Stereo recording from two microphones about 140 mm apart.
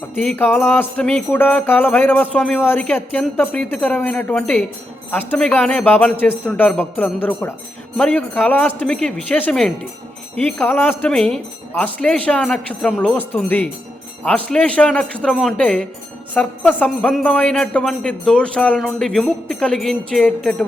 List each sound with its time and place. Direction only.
0.2 s speech: 10° left (ahead or behind)